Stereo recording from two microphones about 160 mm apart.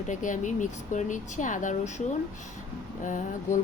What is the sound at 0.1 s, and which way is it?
Speech, 50° left (ahead or behind).